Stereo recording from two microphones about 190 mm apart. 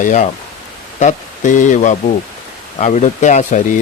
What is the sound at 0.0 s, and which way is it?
Speech, 40° left (ahead or behind).